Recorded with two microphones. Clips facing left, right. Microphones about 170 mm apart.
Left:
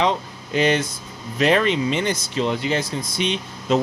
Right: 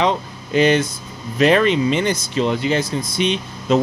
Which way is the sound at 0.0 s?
65° right (ahead or behind).